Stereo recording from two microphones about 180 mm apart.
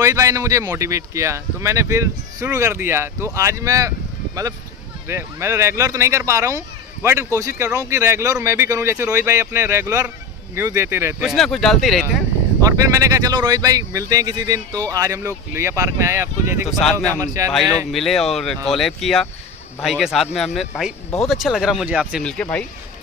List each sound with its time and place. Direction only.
0.0 s speech: 15° right (ahead or behind)
5.0 s speech: 15° right (ahead or behind)
11.2 s speech: centre (ahead or behind)
12.6 s speech: 20° right (ahead or behind)
16.6 s speech: centre (ahead or behind)
17.2 s speech: 15° right (ahead or behind)
17.5 s speech: centre (ahead or behind)
22.2 s speech: 5° left (ahead or behind)